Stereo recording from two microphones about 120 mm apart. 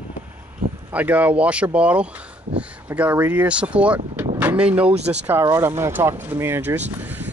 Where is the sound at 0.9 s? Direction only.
15° right (ahead or behind).